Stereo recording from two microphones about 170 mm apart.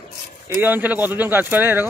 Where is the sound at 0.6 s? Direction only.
10° right (ahead or behind).